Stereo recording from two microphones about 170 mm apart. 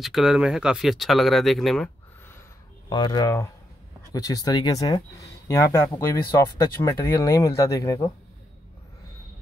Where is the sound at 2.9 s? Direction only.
25° left (ahead or behind).